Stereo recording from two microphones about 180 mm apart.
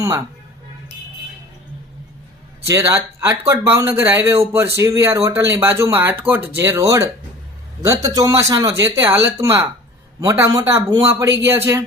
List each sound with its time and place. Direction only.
2.6 s speech: 15° right (ahead or behind)